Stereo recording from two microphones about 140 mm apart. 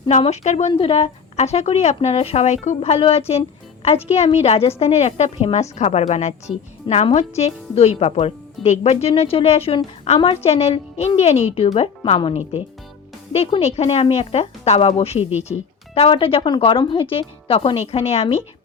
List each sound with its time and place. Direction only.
0.1 s speech: 55° left (ahead or behind)
6.8 s speech: 45° left (ahead or behind)